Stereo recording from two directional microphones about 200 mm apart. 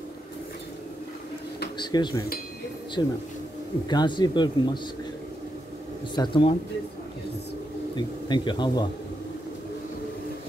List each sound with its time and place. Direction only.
1.8 s speech: 20° left (ahead or behind)
6.1 s speech: 25° left (ahead or behind)
7.9 s speech: 25° left (ahead or behind)